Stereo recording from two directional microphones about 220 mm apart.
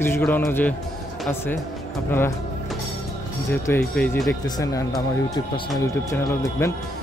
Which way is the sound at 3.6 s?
5° left (ahead or behind).